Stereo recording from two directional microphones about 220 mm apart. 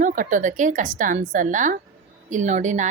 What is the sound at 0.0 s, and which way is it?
A woman's voice, 35° right (ahead or behind).